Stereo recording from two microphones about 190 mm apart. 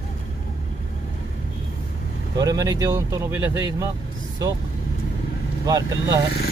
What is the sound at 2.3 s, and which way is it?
Speech, 20° right (ahead or behind).